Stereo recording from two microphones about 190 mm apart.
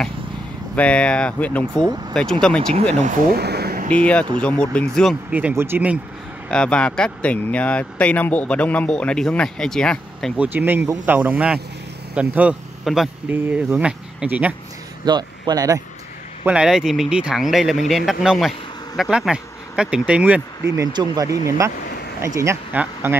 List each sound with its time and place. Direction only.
0.7 s speech: 5° left (ahead or behind)
3.3 s a sound: 60° right (ahead or behind)
3.9 s speech: 5° left (ahead or behind)
5.3 s speech: 10° right (ahead or behind)
6.5 s speech: 5° left (ahead or behind)
10.3 s speech: 10° right (ahead or behind)
15.0 s speech: 20° right (ahead or behind)
16.4 s speech: 5° right (ahead or behind)
20.7 s speech: 20° right (ahead or behind)